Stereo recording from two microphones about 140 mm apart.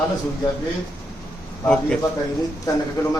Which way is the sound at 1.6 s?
5° left (ahead or behind).